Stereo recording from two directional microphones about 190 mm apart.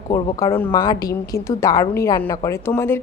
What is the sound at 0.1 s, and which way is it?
A woman's voice, 15° left (ahead or behind).